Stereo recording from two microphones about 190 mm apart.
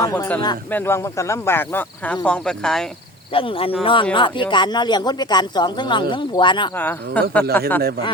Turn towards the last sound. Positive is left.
turn(degrees=10)  # may be behind; listen again after turning